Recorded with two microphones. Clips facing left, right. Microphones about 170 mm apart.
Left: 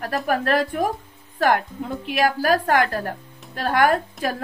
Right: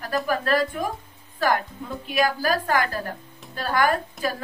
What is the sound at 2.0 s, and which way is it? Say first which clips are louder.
Speech: left 2 dB; 55° left (ahead or behind).